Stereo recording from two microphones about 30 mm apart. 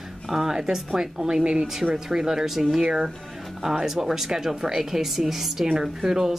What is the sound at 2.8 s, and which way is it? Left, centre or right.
Speech, right.